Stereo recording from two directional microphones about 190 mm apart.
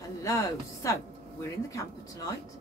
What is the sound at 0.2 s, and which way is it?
Speech, 15° left (ahead or behind).